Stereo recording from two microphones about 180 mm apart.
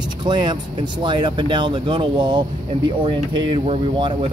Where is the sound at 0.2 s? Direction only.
25° right (ahead or behind).